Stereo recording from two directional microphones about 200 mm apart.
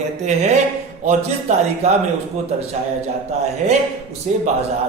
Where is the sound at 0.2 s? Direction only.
35° right (ahead or behind).